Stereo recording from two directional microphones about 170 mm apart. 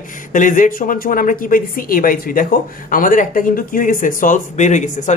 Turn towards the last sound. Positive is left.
turn(degrees=45)  # may be behind; listen again after turning